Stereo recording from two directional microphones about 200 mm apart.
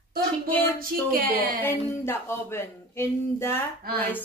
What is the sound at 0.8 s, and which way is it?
Speech, 45° right (ahead or behind).